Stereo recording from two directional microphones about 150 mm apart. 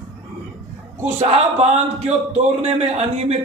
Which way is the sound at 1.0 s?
45° right (ahead or behind).